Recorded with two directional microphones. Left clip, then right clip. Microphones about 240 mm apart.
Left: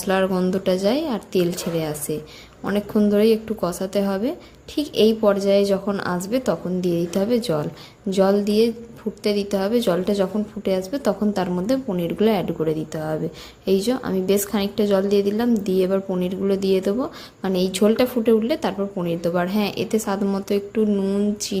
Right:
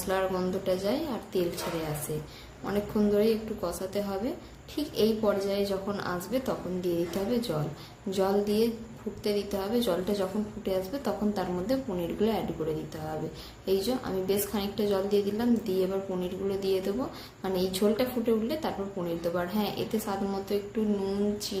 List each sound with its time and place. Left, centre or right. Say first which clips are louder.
0.1 s a woman's voice: left 8 dB; left
2.6 s a woman's voice: left 7 dB; left
13.7 s a woman's voice: left 8 dB; left